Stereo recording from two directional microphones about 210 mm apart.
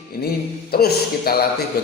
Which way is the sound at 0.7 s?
45° left (ahead or behind).